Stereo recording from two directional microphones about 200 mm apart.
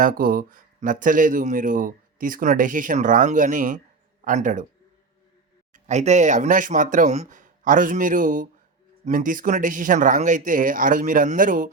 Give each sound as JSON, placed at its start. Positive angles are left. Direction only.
{"t": 0.0, "sound": "speech", "side_deg": -45}
{"t": 5.7, "sound": "speech", "side_deg": -35}